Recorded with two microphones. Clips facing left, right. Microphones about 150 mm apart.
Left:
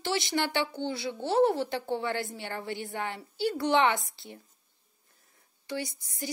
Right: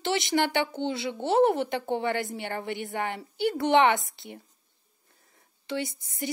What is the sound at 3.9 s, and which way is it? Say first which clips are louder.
Speech: right 3 dB; 20° right (ahead or behind).